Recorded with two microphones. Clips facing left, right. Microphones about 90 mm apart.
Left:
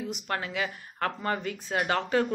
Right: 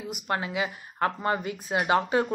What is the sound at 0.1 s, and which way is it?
Speech, 10° right (ahead or behind).